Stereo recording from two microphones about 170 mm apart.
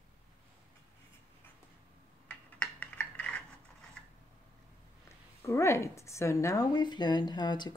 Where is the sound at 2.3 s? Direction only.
10° left (ahead or behind).